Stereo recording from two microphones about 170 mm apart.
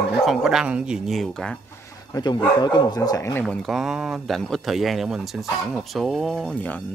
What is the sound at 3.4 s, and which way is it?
Speech, centre (ahead or behind).